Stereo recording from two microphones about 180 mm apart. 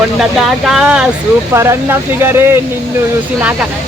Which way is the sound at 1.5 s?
15° right (ahead or behind).